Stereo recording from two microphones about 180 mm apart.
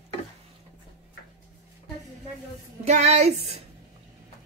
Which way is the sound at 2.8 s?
40° right (ahead or behind).